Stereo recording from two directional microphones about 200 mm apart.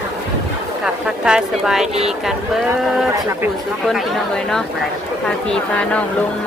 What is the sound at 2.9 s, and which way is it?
Speech, centre (ahead or behind).